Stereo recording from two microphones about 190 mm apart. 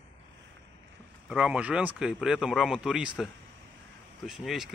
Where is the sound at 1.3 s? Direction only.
5° right (ahead or behind).